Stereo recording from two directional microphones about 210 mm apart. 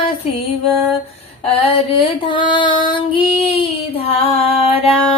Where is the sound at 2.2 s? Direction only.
25° left (ahead or behind).